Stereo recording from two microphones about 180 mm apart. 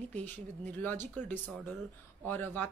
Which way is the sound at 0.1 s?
10° left (ahead or behind).